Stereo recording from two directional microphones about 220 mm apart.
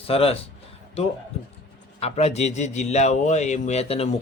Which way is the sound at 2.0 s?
30° left (ahead or behind).